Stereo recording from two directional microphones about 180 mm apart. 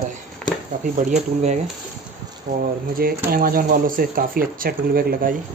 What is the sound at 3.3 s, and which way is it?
Speech, 55° right (ahead or behind).